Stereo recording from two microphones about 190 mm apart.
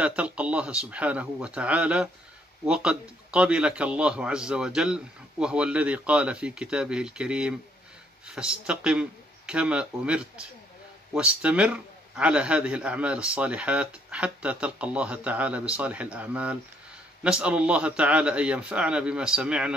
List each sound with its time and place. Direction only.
0.0 s a man's voice: 5° right (ahead or behind)